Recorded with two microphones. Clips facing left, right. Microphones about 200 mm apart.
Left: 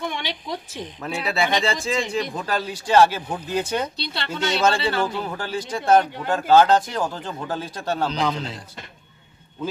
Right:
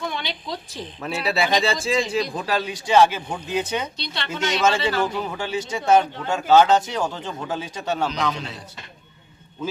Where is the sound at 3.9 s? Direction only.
30° left (ahead or behind).